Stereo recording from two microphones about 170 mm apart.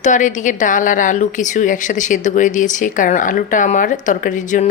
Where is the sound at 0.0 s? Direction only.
50° left (ahead or behind).